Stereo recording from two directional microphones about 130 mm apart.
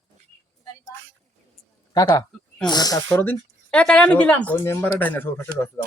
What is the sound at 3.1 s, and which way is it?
Speech, 15° left (ahead or behind).